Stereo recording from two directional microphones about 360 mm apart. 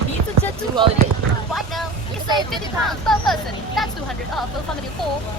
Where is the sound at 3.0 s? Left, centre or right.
Centre.